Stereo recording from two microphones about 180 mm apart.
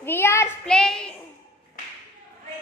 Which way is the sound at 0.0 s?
15° left (ahead or behind).